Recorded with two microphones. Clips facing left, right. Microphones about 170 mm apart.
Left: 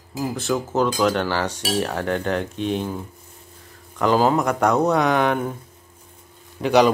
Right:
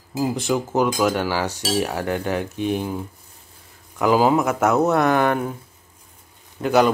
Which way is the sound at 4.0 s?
10° right (ahead or behind).